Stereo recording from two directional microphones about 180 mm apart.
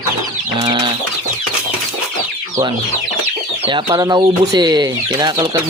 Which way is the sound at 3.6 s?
25° right (ahead or behind).